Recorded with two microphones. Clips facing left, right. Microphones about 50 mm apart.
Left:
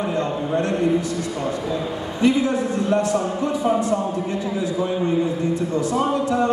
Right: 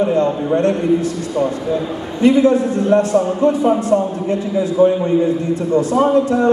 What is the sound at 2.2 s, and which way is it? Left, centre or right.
Music, right.